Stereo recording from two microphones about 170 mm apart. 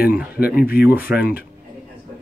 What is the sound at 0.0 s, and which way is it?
Speech, 10° right (ahead or behind).